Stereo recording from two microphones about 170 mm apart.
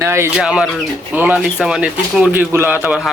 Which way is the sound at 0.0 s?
15° right (ahead or behind).